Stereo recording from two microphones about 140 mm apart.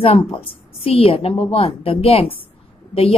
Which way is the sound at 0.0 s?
40° left (ahead or behind).